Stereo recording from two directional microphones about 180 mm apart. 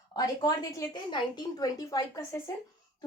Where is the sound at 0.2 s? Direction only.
20° left (ahead or behind).